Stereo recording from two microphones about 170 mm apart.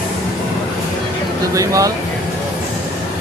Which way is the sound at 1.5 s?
20° right (ahead or behind).